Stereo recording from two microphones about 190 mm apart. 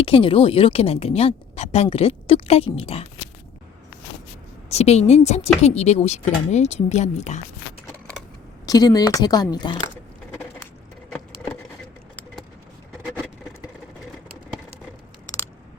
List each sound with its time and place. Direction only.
0.0 s a woman's voice: 30° left (ahead or behind)
4.7 s a woman's voice: 35° left (ahead or behind)
8.6 s speech: 20° left (ahead or behind)